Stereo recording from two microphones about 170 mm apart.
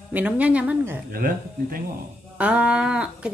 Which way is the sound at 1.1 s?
55° right (ahead or behind).